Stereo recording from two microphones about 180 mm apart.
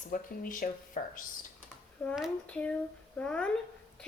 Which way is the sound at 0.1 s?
50° left (ahead or behind).